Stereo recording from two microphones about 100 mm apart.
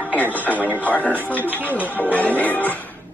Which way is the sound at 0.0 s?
15° left (ahead or behind).